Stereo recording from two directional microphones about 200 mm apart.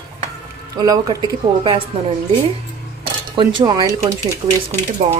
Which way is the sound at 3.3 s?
20° right (ahead or behind).